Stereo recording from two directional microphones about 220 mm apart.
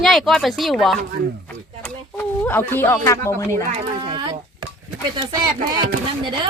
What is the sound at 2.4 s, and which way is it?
Speech, 10° left (ahead or behind).